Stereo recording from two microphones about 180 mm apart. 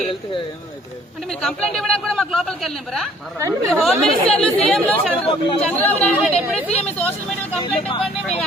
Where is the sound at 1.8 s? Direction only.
5° left (ahead or behind).